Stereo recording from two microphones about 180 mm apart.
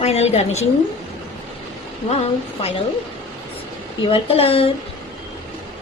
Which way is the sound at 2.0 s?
35° left (ahead or behind).